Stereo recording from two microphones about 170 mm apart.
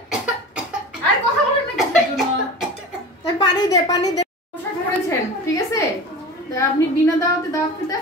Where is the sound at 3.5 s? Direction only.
20° left (ahead or behind).